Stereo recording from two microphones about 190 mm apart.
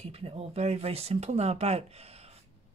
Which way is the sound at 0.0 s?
30° right (ahead or behind).